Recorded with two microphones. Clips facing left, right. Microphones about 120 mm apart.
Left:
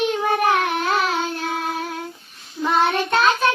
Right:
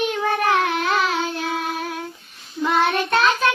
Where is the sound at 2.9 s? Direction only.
30° left (ahead or behind).